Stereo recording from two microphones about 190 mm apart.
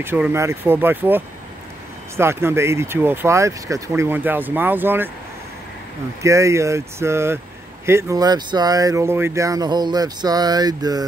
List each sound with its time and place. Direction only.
0.0 s speech: 10° right (ahead or behind)
6.2 s speech: 15° right (ahead or behind)